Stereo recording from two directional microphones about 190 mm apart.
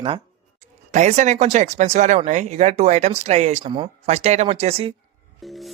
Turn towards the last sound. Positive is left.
turn(degrees=-30)  # may be behind; listen again after turning